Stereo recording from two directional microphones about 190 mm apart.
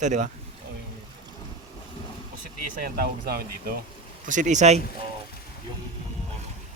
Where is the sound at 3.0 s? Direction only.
50° right (ahead or behind).